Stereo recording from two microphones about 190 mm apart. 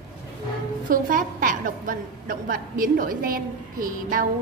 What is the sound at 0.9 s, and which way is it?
A woman's voice, 45° right (ahead or behind).